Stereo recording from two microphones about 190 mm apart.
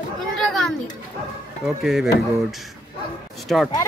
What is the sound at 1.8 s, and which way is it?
Speech, centre (ahead or behind).